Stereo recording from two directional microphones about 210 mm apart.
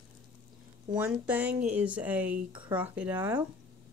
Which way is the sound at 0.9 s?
5° right (ahead or behind).